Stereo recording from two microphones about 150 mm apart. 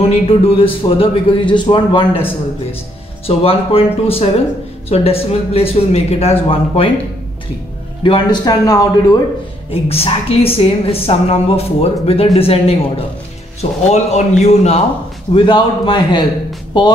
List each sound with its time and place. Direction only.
0.1 s a woman's voice: 40° left (ahead or behind)
3.3 s a woman's voice: 40° left (ahead or behind)
8.0 s a man's voice: 30° left (ahead or behind)
9.7 s a woman's voice: 40° left (ahead or behind)
15.3 s a woman's voice: 30° left (ahead or behind)